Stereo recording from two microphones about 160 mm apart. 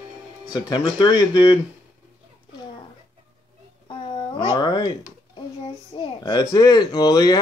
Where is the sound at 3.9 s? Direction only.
30° left (ahead or behind).